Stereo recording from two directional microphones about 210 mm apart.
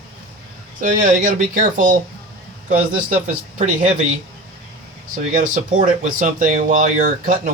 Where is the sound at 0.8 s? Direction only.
40° right (ahead or behind).